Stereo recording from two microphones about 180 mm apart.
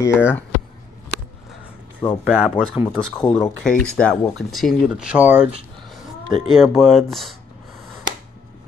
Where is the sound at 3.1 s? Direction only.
20° left (ahead or behind).